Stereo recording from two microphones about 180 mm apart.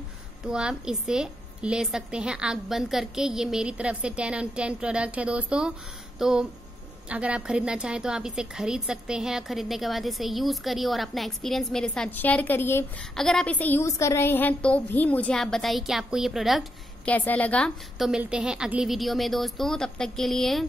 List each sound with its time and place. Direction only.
0.5 s a woman's voice: 5° right (ahead or behind)